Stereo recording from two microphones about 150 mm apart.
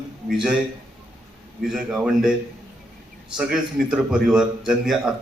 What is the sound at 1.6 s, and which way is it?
Speech, 5° right (ahead or behind).